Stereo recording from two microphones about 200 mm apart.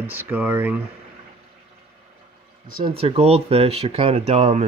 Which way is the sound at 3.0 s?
30° right (ahead or behind).